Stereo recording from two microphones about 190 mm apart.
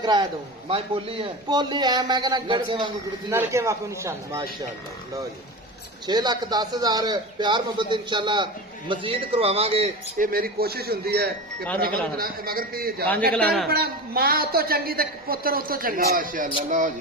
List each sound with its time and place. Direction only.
0.0 s a man's voice: 20° right (ahead or behind)
6.1 s a man's voice: 20° right (ahead or behind)
10.2 s a woman's voice: 50° right (ahead or behind)
13.3 s speech: 5° left (ahead or behind)
13.7 s a woman's voice: 55° right (ahead or behind)